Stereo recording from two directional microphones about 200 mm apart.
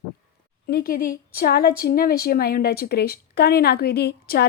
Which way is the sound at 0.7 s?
50° left (ahead or behind).